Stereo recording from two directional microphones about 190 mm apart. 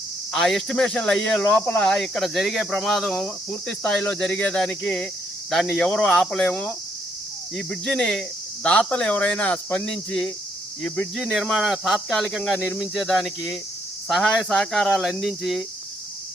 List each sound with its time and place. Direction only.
0.3 s speech: 5° left (ahead or behind)